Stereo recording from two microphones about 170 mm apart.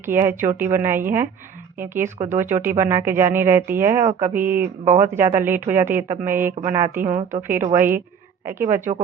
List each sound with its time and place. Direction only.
0.0 s speech: 15° right (ahead or behind)
2.1 s speech: 35° right (ahead or behind)
2.4 s speech: 15° right (ahead or behind)